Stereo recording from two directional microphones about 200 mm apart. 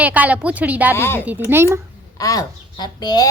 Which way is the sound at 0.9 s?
10° left (ahead or behind).